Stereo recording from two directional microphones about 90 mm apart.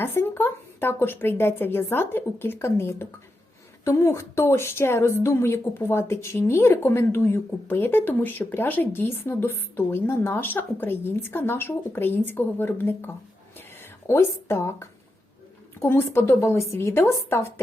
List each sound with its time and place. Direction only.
0.0 s speech: 25° left (ahead or behind)